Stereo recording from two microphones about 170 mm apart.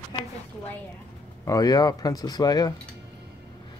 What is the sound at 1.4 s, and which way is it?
Speech, 20° left (ahead or behind).